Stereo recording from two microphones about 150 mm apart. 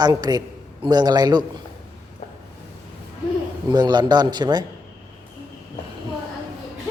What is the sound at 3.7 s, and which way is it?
Speech, 30° right (ahead or behind).